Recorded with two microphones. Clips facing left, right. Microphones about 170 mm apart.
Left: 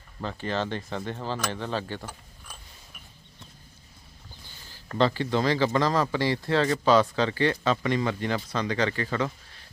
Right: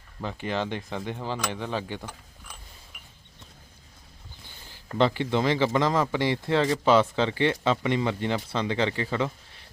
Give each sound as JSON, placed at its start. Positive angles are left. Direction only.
{"t": 0.2, "sound": "speech", "side_deg": -15}
{"t": 2.0, "sound": "mechanisms", "side_deg": 5}
{"t": 4.7, "sound": "speech", "side_deg": -20}